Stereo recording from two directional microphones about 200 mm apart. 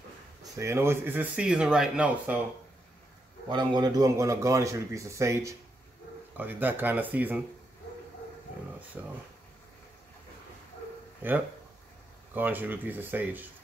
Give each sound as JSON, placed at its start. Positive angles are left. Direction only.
{"t": 0.4, "sound": "speech", "side_deg": -15}
{"t": 3.4, "sound": "speech", "side_deg": -20}
{"t": 9.0, "sound": "speech", "side_deg": -10}
{"t": 12.4, "sound": "speech", "side_deg": -10}